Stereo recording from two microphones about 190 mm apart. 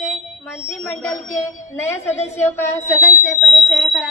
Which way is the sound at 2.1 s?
35° left (ahead or behind).